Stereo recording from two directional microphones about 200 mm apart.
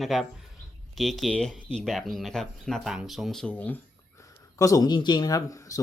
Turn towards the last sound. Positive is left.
turn(degrees=15)  # may be behind; listen again after turning